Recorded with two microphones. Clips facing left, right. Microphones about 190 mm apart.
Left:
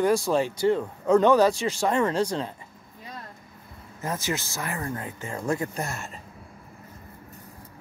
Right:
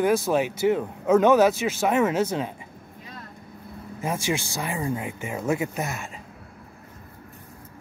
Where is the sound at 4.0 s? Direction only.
10° right (ahead or behind).